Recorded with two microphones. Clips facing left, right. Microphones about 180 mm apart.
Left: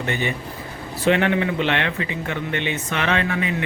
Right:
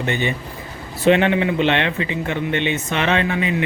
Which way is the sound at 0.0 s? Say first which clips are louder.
Right 2 dB; 20° right (ahead or behind).